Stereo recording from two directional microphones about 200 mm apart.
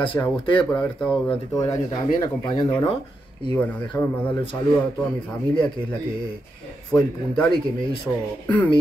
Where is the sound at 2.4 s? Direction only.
20° left (ahead or behind).